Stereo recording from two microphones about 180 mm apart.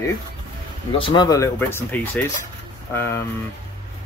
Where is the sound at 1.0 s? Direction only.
25° left (ahead or behind).